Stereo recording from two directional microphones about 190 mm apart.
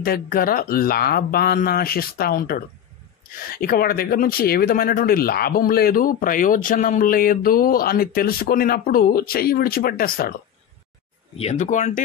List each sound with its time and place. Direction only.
0.0 s speech: 50° left (ahead or behind)
11.3 s speech: 35° left (ahead or behind)